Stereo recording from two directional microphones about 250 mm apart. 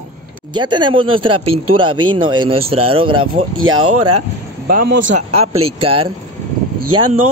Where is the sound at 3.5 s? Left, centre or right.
Right.